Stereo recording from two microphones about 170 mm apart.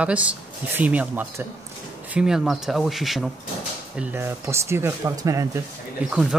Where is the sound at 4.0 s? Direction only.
15° right (ahead or behind).